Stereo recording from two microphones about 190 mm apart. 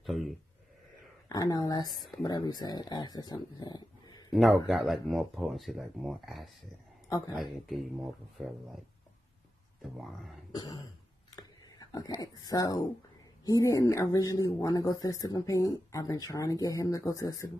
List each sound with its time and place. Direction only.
0.0 s speech: centre (ahead or behind)
1.3 s speech: 20° left (ahead or behind)
4.3 s a man's voice: centre (ahead or behind)
7.1 s speech: 20° left (ahead or behind)
7.3 s speech: centre (ahead or behind)
9.8 s speech: centre (ahead or behind)
10.5 s throat clearing: 20° left (ahead or behind)
11.2 s a sound: 20° left (ahead or behind)
13.5 s speech: 15° left (ahead or behind)